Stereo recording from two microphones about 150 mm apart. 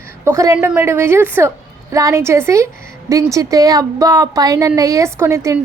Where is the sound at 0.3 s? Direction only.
20° right (ahead or behind).